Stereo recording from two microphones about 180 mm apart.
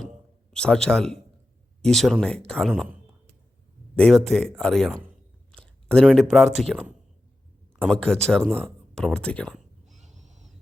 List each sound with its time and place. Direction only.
0.5 s speech: 5° left (ahead or behind)
3.9 s speech: 5° left (ahead or behind)
5.5 s a sound: 5° left (ahead or behind)
6.3 s speech: centre (ahead or behind)
7.8 s speech: 5° left (ahead or behind)
10.0 s a sound: 40° right (ahead or behind)